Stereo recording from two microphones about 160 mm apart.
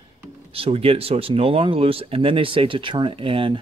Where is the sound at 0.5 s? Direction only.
35° right (ahead or behind).